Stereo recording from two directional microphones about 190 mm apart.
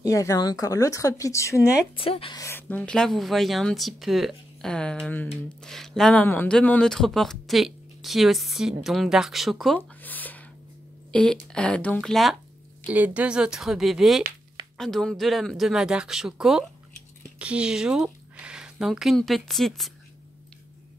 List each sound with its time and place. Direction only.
0.0 s speech: 15° left (ahead or behind)
2.0 s speech: 30° left (ahead or behind)
2.4 s speech: 10° left (ahead or behind)